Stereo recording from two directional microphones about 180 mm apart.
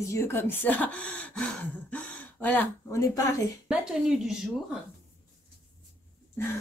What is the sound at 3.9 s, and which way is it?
Speech, 5° right (ahead or behind).